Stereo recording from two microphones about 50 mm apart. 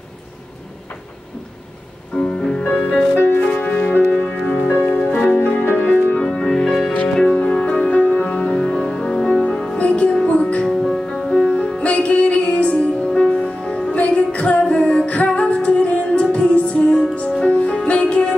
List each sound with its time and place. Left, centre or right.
2.1 s music: centre
3.2 s music: left
5.6 s music: left
6.2 s music: centre
7.4 s music: left
10.7 s music: centre
11.8 s music: left